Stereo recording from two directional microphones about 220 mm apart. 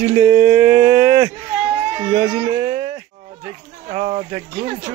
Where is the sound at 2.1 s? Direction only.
25° right (ahead or behind).